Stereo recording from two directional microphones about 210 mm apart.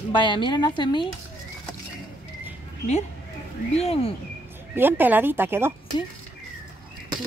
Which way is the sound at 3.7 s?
30° left (ahead or behind).